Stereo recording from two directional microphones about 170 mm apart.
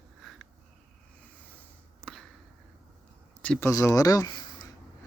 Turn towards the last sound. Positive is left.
turn(degrees=25)  # may be behind; listen again after turning